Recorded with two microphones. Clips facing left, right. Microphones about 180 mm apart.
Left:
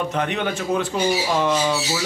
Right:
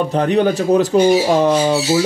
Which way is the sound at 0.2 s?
35° right (ahead or behind).